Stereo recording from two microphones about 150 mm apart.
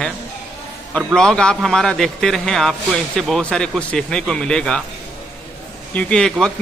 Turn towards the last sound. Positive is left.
turn(degrees=5)  # may be behind; listen again after turning